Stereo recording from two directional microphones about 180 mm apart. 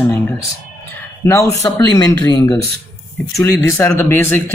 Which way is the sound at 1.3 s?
15° left (ahead or behind).